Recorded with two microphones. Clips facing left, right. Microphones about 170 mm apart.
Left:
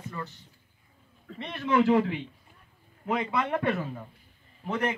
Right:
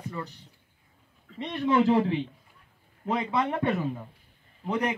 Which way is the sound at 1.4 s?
20° right (ahead or behind).